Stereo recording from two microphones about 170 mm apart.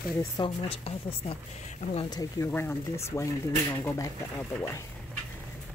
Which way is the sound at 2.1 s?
20° left (ahead or behind).